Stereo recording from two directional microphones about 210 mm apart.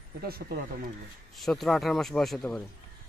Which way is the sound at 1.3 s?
Centre (ahead or behind).